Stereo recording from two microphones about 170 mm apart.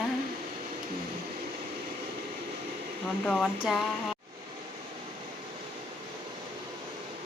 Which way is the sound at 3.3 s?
Centre (ahead or behind).